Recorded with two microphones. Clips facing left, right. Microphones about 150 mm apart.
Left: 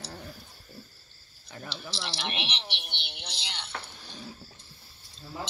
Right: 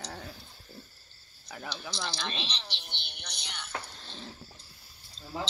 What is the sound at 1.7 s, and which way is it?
Speech, 25° left (ahead or behind).